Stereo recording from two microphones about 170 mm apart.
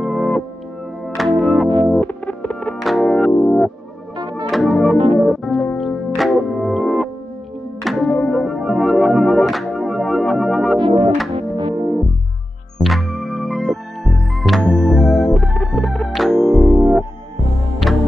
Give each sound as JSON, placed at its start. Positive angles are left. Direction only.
{"t": 0.0, "sound": "music", "side_deg": 0}
{"t": 4.2, "sound": "music", "side_deg": -25}
{"t": 4.5, "sound": "music", "side_deg": 0}
{"t": 4.9, "sound": "music", "side_deg": -35}
{"t": 5.2, "sound": "music", "side_deg": 0}
{"t": 10.8, "sound": "music", "side_deg": -35}
{"t": 12.7, "sound": "music", "side_deg": 0}